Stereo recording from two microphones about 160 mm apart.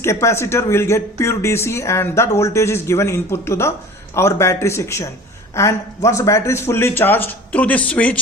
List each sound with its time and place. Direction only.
0.0 s speech: 15° left (ahead or behind)